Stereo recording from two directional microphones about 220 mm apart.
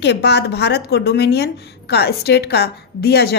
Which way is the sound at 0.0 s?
50° left (ahead or behind).